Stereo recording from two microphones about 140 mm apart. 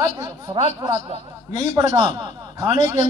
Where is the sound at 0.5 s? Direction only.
35° right (ahead or behind).